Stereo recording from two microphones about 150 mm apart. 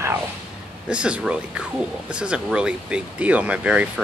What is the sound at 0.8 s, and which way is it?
Speech, 5° right (ahead or behind).